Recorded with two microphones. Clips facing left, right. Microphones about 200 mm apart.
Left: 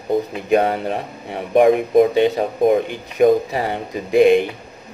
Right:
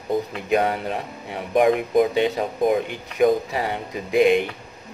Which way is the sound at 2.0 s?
30° left (ahead or behind).